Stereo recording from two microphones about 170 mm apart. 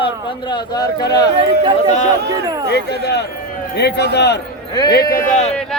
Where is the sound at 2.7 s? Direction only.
75° left (ahead or behind).